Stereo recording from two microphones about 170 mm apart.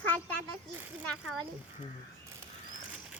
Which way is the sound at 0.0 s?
10° left (ahead or behind).